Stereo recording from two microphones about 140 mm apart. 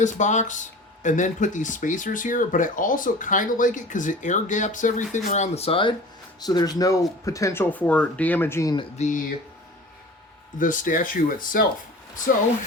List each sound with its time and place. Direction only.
0.0 s speech: 60° left (ahead or behind); by 5.9 s 40° left (ahead or behind)
6.4 s speech: 30° left (ahead or behind)
9.0 s speech: 60° left (ahead or behind)
10.6 s speech: 70° left (ahead or behind)